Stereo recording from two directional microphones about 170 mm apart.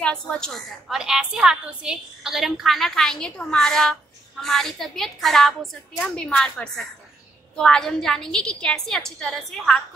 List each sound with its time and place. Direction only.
0.0 s a woman's voice: 5° left (ahead or behind)